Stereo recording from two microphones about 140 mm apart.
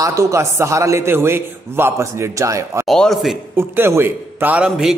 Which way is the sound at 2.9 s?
Centre (ahead or behind).